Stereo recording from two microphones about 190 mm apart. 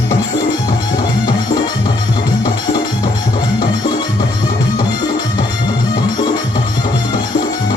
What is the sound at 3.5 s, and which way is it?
Music, 20° left (ahead or behind).